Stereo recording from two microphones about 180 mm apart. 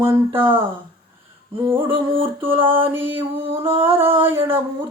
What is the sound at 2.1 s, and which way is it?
Speech, 30° right (ahead or behind).